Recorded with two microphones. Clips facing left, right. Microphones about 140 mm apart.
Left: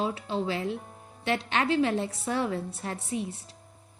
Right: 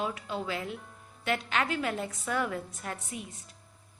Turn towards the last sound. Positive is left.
turn(degrees=35)  # may be behind; listen again after turning